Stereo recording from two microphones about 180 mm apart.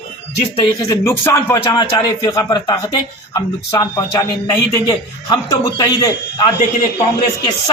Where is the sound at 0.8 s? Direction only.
15° left (ahead or behind).